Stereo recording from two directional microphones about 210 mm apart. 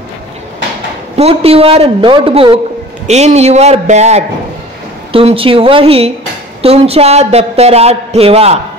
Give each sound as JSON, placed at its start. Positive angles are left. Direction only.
{"t": 1.1, "sound": "a man's voice", "side_deg": -30}